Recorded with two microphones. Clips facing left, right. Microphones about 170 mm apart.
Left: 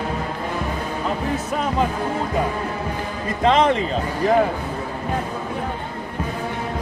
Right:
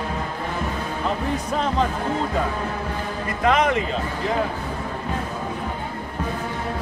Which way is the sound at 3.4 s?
30° left (ahead or behind).